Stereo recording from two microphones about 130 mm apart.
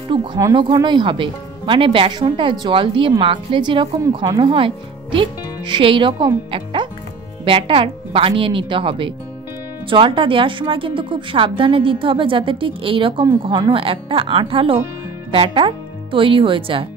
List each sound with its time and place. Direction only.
0.1 s a woman's voice: 40° right (ahead or behind)